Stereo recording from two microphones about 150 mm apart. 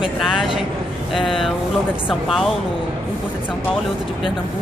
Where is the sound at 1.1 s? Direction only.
Centre (ahead or behind).